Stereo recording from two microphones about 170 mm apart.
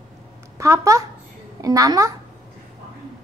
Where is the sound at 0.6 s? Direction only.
15° right (ahead or behind).